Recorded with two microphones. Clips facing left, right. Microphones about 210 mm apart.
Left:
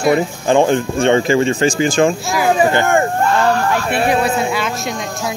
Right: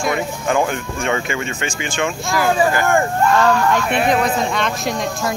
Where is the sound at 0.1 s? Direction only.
30° left (ahead or behind).